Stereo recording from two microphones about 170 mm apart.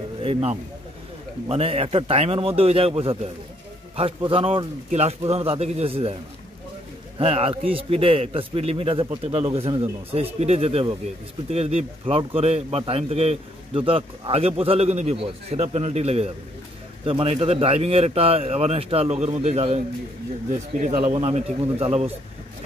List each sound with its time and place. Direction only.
0.2 s a man's voice: 35° right (ahead or behind)
7.2 s a man's voice: 35° right (ahead or behind)